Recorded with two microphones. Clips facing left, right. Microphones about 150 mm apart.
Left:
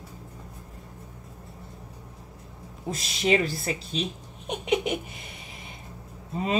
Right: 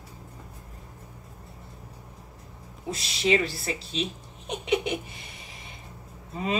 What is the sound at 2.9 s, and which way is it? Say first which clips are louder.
Speech: even; 45° left (ahead or behind).